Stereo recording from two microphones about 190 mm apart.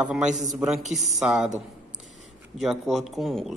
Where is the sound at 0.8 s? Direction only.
40° right (ahead or behind).